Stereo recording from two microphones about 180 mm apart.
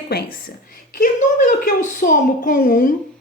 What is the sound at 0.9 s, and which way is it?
A woman's voice, 50° left (ahead or behind).